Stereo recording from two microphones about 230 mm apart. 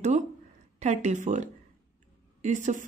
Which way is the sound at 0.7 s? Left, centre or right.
Right.